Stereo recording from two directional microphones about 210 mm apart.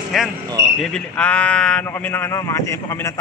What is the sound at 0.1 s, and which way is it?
Speech, centre (ahead or behind).